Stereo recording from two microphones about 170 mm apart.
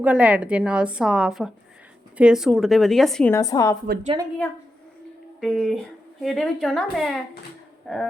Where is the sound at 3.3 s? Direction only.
20° left (ahead or behind).